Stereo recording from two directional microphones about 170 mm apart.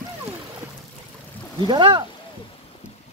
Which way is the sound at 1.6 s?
30° right (ahead or behind).